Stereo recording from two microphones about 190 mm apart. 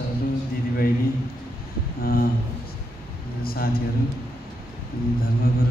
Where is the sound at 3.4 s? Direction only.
50° left (ahead or behind).